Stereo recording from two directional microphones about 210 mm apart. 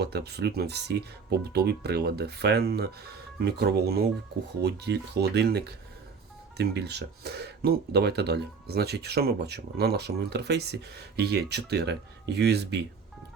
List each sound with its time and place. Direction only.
0.0 s speech: 50° right (ahead or behind)